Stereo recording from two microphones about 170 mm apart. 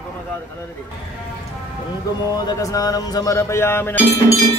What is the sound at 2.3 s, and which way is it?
Music, 25° left (ahead or behind).